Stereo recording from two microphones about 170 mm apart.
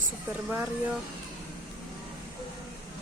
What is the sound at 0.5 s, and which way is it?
Speech, 10° right (ahead or behind).